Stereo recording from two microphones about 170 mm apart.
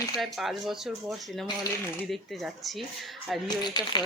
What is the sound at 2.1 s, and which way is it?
Speech, centre (ahead or behind).